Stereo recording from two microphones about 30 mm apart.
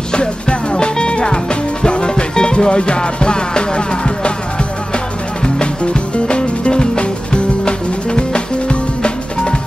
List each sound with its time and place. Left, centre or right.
0.1 s music: left